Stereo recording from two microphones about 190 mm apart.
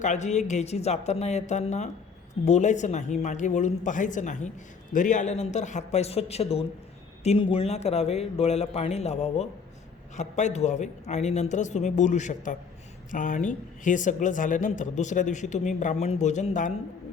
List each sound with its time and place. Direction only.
0.0 s speech: 40° left (ahead or behind)